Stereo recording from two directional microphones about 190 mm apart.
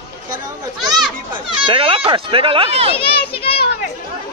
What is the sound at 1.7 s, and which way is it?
Speech, 30° right (ahead or behind).